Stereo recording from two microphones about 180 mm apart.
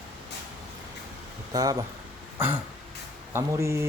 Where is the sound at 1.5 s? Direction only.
20° right (ahead or behind).